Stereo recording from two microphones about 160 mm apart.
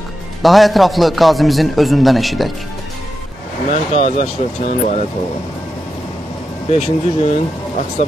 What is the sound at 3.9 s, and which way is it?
Speech, 40° left (ahead or behind).